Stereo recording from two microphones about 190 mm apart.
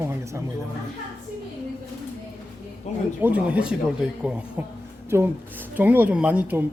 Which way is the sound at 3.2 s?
10° right (ahead or behind).